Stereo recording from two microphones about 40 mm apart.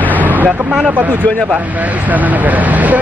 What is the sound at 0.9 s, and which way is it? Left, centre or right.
Speech, right.